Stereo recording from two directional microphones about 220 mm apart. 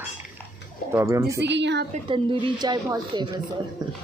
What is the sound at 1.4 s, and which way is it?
Speech, 50° right (ahead or behind).